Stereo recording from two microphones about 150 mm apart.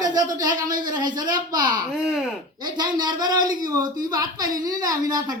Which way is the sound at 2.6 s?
30° right (ahead or behind).